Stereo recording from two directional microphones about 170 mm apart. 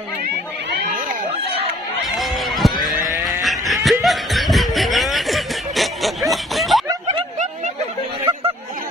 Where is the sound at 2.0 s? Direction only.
Centre (ahead or behind).